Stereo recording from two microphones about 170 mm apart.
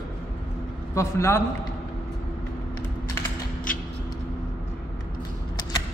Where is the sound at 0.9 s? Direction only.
15° left (ahead or behind).